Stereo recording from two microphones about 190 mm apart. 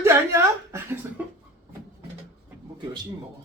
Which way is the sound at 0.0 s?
15° right (ahead or behind).